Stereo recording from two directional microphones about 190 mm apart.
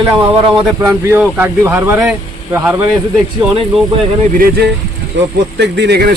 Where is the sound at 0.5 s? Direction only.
20° right (ahead or behind).